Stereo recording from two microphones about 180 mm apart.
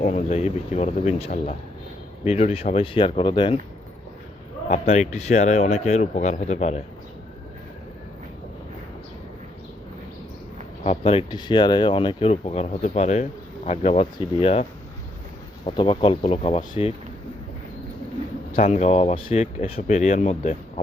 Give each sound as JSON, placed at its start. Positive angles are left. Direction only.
{"t": 0.0, "sound": "speech", "side_deg": 35}
{"t": 4.7, "sound": "speech", "side_deg": 40}
{"t": 10.8, "sound": "speech", "side_deg": 30}
{"t": 18.5, "sound": "speech", "side_deg": 40}